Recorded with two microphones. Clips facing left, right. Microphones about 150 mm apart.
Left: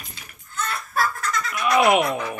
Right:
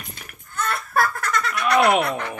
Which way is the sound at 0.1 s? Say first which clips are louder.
Right 3 dB; 55° right (ahead or behind).